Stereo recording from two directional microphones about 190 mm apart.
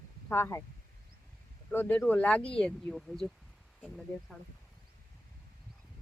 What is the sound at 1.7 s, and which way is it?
Speech, 10° left (ahead or behind).